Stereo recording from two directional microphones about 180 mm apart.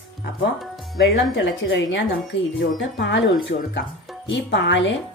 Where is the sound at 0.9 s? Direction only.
80° left.